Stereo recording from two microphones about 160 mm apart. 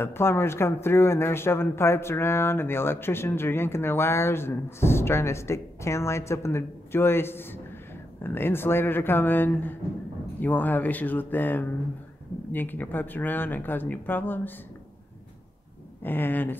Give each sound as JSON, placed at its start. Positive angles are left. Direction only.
{"t": 0.0, "sound": "speech", "side_deg": 15}
{"t": 16.0, "sound": "speech", "side_deg": 10}